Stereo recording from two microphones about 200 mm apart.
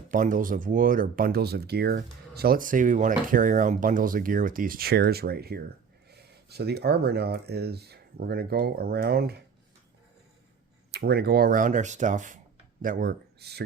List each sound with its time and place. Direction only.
0.1 s speech: 40° right (ahead or behind)
10.9 s speech: 55° right (ahead or behind)